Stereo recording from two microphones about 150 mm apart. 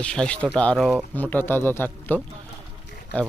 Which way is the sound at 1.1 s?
10° left (ahead or behind).